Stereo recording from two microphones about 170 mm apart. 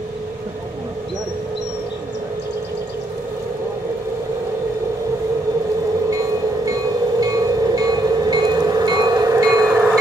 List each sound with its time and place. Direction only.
6.6 s train: 20° right (ahead or behind)